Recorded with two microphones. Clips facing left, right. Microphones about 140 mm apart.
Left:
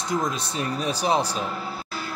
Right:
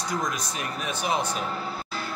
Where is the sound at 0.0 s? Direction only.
25° left (ahead or behind).